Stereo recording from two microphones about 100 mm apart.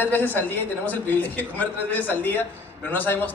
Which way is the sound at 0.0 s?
15° left (ahead or behind).